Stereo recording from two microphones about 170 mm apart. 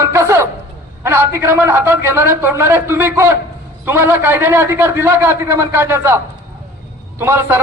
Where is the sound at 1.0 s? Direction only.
15° right (ahead or behind).